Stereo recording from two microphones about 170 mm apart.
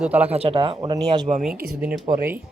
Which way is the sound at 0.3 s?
35° right (ahead or behind).